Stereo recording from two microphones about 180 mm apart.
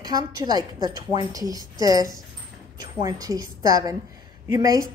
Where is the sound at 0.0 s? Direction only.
20° right (ahead or behind).